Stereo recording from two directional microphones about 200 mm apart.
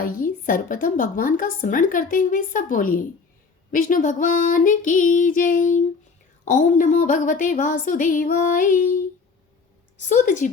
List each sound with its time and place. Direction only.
0.0 s a woman's voice: 40° left (ahead or behind)
10.0 s a woman's voice: 40° left (ahead or behind)